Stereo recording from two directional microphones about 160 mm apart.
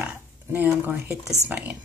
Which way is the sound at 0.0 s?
10° right (ahead or behind).